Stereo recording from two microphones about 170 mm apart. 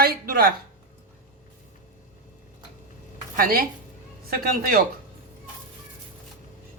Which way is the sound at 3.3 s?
60° right (ahead or behind).